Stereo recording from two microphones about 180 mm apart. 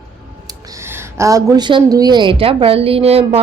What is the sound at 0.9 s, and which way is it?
A woman's voice, 15° right (ahead or behind).